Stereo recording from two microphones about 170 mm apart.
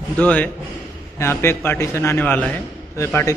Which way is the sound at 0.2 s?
10° left (ahead or behind).